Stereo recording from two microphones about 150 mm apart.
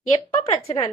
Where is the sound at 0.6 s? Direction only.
40° left (ahead or behind).